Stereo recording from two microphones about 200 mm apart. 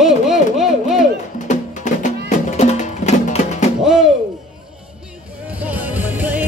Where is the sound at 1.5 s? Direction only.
35° left (ahead or behind).